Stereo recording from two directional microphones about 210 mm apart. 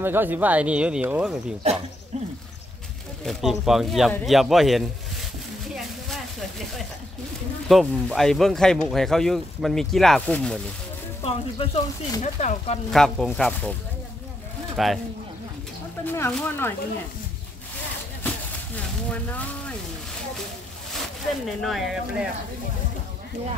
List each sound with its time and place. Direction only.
0.0 s speech: 10° right (ahead or behind)
2.1 s speech: 30° right (ahead or behind)
3.3 s speech: centre (ahead or behind)
5.8 s a sound: centre (ahead or behind)
7.6 s speech: centre (ahead or behind)
11.2 s speech: 25° left (ahead or behind)
12.9 s speech: centre (ahead or behind)
14.8 s speech: centre (ahead or behind)
16.1 s speech: 10° left (ahead or behind)
21.5 s speech: centre (ahead or behind)